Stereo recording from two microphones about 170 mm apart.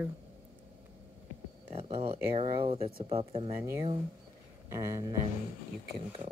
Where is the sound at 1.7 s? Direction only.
35° right (ahead or behind).